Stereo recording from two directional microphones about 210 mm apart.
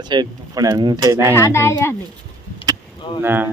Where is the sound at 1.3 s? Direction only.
15° left (ahead or behind).